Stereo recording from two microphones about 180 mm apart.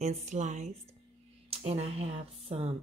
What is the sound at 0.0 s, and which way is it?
Speech, 40° right (ahead or behind).